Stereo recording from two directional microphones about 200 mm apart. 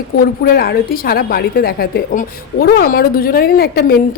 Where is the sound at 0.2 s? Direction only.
50° left (ahead or behind).